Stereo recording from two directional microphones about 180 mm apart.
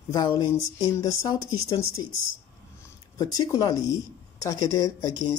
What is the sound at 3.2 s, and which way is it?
Speech, 20° left (ahead or behind).